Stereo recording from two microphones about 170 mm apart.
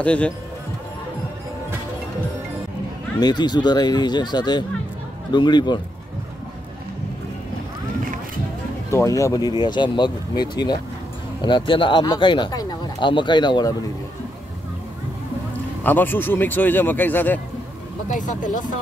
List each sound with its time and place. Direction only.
0.0 s speech: 5° left (ahead or behind)
3.2 s speech: 25° left (ahead or behind)
8.9 s speech: 20° left (ahead or behind)
15.8 s speech: 10° left (ahead or behind)
18.1 s speech: 50° left (ahead or behind)